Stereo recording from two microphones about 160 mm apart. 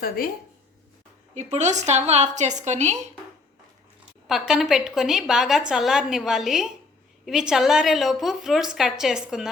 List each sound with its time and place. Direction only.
1.3 s a woman's voice: 45° right (ahead or behind)
4.3 s a woman's voice: 5° right (ahead or behind)